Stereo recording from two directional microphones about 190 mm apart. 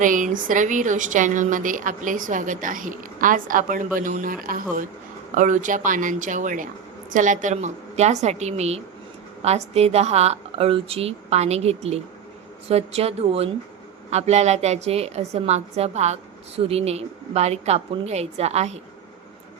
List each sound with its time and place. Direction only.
0.0 s a woman's voice: 45° right (ahead or behind)